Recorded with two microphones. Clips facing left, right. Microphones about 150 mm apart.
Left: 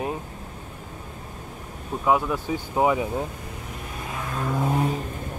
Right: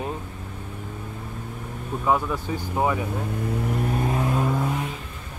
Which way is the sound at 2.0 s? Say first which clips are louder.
Left 1 dB; 10° left (ahead or behind).